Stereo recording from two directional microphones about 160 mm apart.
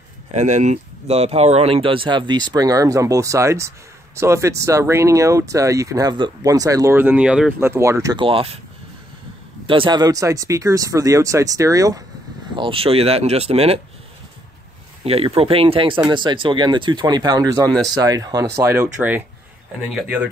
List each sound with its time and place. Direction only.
0.3 s speech: 45° right (ahead or behind); by 7.5 s 5° right (ahead or behind)
7.6 s speech: 15° right (ahead or behind); by 8.5 s 35° right (ahead or behind)
9.7 s speech: 30° right (ahead or behind)
12.5 s speech: 35° right (ahead or behind)
15.0 s speech: 35° right (ahead or behind)
17.6 s speech: 5° left (ahead or behind)
17.9 s speech: 20° right (ahead or behind); by 20.2 s 5° right (ahead or behind)